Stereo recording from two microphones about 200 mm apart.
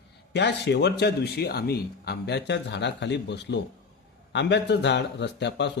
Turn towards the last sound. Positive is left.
turn(degrees=60)  # may be behind; listen again after turning